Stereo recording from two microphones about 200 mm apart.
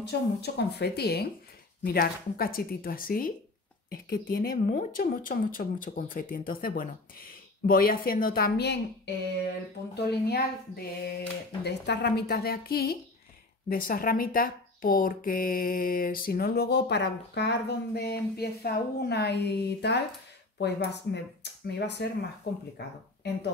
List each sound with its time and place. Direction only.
0.0 s speech: 55° left (ahead or behind)